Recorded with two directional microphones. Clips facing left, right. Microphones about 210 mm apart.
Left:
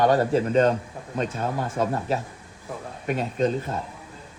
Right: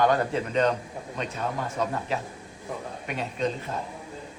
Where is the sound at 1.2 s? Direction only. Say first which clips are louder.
Left 4 dB; 45° left (ahead or behind).